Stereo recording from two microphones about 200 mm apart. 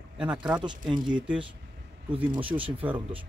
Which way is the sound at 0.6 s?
20° right (ahead or behind).